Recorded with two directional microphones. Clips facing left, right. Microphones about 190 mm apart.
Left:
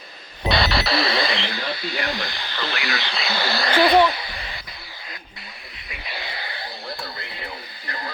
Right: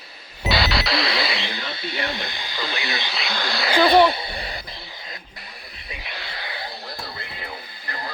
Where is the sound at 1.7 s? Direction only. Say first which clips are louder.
Left 1 dB; 25° right (ahead or behind).